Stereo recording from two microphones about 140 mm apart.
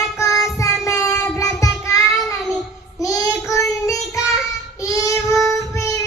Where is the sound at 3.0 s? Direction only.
25° left (ahead or behind).